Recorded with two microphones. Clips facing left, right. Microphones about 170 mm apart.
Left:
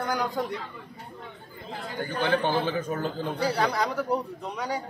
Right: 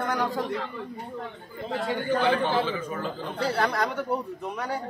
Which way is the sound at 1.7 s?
90° right.